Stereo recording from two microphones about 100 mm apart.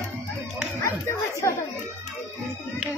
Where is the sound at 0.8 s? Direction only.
30° left (ahead or behind).